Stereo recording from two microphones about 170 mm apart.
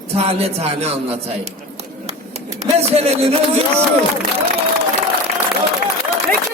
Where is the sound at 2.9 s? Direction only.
35° right (ahead or behind).